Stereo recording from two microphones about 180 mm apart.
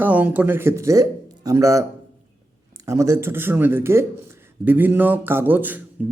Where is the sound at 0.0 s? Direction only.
10° right (ahead or behind).